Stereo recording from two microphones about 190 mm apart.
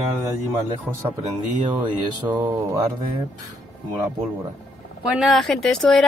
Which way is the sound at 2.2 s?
20° right (ahead or behind).